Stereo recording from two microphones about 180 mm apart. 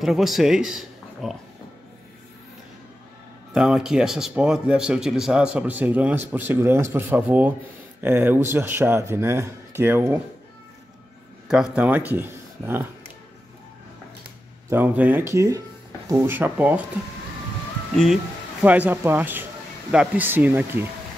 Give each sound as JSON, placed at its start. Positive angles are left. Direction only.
{"t": 0.0, "sound": "speech", "side_deg": 0}
{"t": 3.5, "sound": "speech", "side_deg": -5}
{"t": 11.4, "sound": "speech", "side_deg": -5}
{"t": 14.7, "sound": "speech", "side_deg": -10}
{"t": 17.9, "sound": "speech", "side_deg": 0}